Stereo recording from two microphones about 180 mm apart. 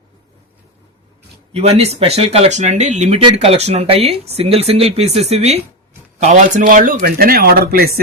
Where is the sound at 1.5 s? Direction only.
35° right (ahead or behind).